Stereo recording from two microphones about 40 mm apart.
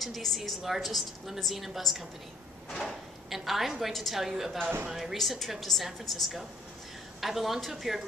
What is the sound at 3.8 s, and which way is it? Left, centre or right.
Speech, centre.